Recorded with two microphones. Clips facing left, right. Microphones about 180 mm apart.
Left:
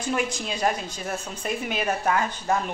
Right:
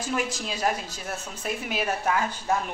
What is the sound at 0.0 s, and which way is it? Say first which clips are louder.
Speech: left 2 dB; 5° right (ahead or behind).